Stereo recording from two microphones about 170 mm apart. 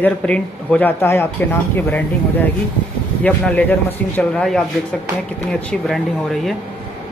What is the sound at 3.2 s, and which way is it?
Speech, 10° left (ahead or behind).